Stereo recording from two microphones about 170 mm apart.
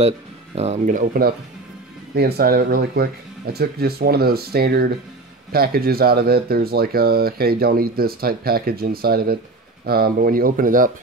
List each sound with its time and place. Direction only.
0.6 s speech: 45° right (ahead or behind)
2.1 s speech: 65° right (ahead or behind)